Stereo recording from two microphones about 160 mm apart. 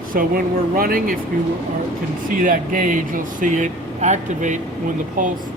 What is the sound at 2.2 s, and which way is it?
Speech, 60° right (ahead or behind).